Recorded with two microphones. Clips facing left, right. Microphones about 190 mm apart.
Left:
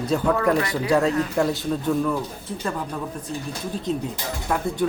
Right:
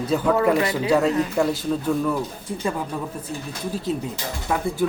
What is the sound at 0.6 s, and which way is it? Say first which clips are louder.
Speech: right 3 dB; 20° right (ahead or behind).